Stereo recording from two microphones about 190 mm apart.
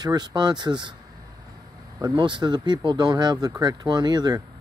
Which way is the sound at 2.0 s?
20° right (ahead or behind).